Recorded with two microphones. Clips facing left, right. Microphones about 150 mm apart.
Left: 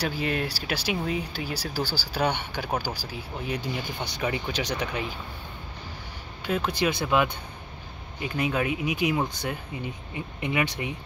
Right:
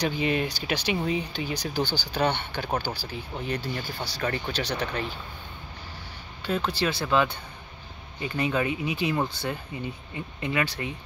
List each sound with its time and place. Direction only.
0.0 s speech: 5° left (ahead or behind)
6.4 s speech: 10° left (ahead or behind)